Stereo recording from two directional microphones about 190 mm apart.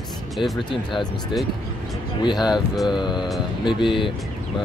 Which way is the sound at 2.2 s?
20° left (ahead or behind).